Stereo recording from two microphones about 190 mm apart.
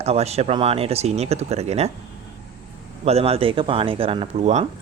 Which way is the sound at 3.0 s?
35° right (ahead or behind).